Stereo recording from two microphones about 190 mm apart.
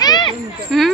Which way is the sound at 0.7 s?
Centre (ahead or behind).